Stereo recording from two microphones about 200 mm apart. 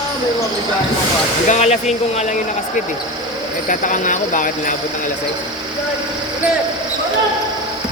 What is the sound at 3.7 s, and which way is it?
Speech, 40° left (ahead or behind).